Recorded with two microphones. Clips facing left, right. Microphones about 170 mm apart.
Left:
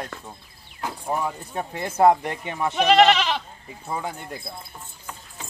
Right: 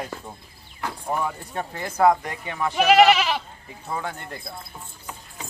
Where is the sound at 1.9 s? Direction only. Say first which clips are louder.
Left 2 dB; 25° left (ahead or behind).